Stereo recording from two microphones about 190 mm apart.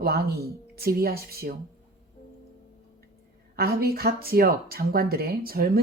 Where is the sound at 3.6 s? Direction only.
55° right (ahead or behind).